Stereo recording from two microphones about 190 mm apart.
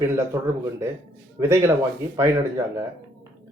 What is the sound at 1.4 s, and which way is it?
Speech, 15° right (ahead or behind).